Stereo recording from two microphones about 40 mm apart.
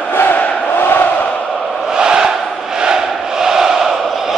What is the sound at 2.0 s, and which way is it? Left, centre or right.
Crowd, centre.